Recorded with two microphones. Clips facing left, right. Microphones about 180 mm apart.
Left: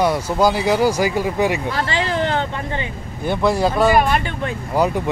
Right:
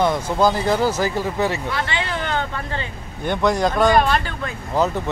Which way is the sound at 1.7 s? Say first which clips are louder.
Left 4 dB; 35° left (ahead or behind).